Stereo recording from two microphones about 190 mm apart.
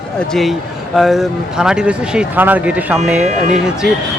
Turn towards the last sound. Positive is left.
turn(degrees=-5)  # may be behind; listen again after turning